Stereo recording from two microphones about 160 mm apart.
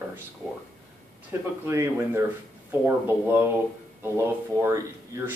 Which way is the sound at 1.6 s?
15° right (ahead or behind).